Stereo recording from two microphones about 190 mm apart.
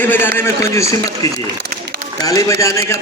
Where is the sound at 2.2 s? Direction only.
15° left (ahead or behind).